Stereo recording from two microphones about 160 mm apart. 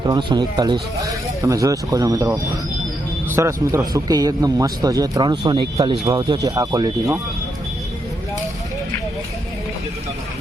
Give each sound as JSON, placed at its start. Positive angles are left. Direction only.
{"t": 0.1, "sound": "speech", "side_deg": -30}